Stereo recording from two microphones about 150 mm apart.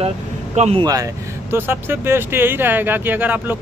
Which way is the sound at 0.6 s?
45° right (ahead or behind).